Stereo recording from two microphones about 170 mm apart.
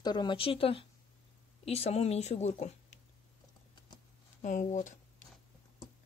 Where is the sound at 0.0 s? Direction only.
25° left (ahead or behind); by 2.7 s 40° left (ahead or behind).